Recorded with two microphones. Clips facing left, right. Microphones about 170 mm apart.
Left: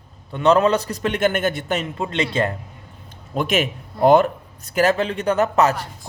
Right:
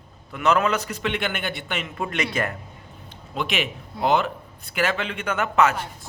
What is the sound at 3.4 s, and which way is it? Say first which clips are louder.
A man's voice: left 6 dB; 45° left (ahead or behind).